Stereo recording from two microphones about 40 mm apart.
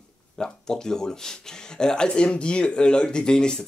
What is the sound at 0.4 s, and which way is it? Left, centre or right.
A man's voice, centre.